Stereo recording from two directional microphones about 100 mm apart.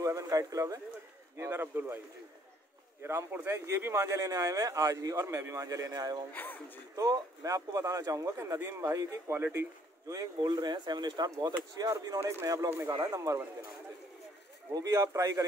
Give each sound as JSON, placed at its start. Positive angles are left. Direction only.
{"t": 0.0, "sound": "speech", "side_deg": -35}
{"t": 3.0, "sound": "speech", "side_deg": -25}
{"t": 6.3, "sound": "speech", "side_deg": 20}
{"t": 7.0, "sound": "speech", "side_deg": -35}
{"t": 10.4, "sound": "speech", "side_deg": -45}
{"t": 12.2, "sound": "speech", "side_deg": -20}
{"t": 13.0, "sound": "speech", "side_deg": -35}
{"t": 14.7, "sound": "speech", "side_deg": -35}